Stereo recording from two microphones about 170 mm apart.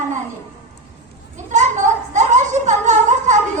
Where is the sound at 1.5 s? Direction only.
45° right (ahead or behind).